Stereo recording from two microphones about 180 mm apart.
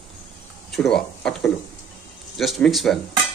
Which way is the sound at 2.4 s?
Centre (ahead or behind).